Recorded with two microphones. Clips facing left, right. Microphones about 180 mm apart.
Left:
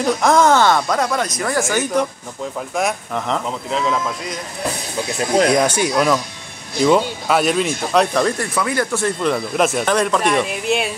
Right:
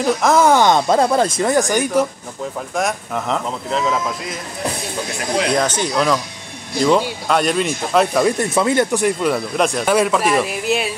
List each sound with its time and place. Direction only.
0.0 s speech: centre (ahead or behind)
2.7 s a man's voice: centre (ahead or behind)
5.6 s speech: 10° left (ahead or behind)
7.2 s a man's voice: 5° left (ahead or behind)
8.4 s speech: 25° right (ahead or behind)
9.2 s a man's voice: centre (ahead or behind)